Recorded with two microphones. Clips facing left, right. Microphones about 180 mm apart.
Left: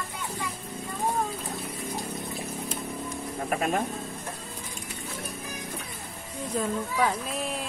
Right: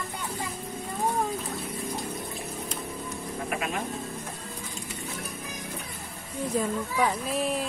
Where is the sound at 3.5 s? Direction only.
40° left (ahead or behind).